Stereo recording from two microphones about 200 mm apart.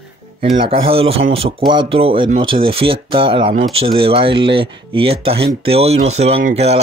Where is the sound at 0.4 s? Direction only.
25° right (ahead or behind).